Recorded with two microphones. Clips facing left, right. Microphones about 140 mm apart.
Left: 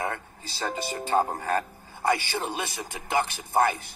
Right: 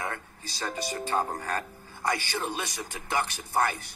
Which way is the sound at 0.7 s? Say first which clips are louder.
Left 3 dB; 25° left (ahead or behind).